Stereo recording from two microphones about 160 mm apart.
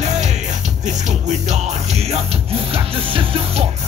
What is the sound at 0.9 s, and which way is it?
Music, 50° right (ahead or behind).